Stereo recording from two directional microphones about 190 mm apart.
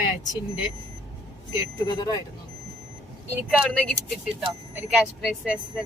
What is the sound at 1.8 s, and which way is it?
Speech, 25° left (ahead or behind).